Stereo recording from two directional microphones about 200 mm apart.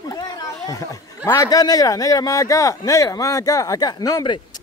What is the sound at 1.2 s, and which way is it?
Speech, 15° left (ahead or behind).